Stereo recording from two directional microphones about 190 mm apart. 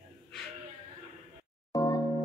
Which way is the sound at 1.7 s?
20° left (ahead or behind).